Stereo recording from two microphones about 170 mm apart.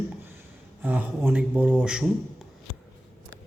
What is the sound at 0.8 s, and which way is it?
Speech, 10° right (ahead or behind).